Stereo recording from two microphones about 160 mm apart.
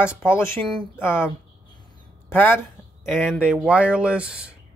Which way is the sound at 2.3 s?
10° left (ahead or behind).